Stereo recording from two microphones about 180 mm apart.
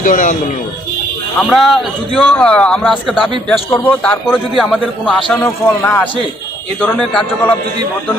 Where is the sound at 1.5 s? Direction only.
Centre (ahead or behind).